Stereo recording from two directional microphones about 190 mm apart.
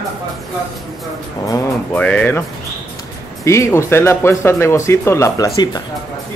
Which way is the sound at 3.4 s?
15° left (ahead or behind).